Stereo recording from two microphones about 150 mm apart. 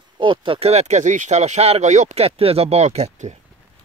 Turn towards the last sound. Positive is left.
turn(degrees=-50)  # may be behind; listen again after turning